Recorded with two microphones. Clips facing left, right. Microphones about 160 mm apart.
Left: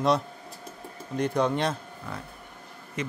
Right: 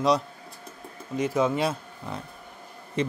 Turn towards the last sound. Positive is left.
turn(degrees=-30)  # may be behind; listen again after turning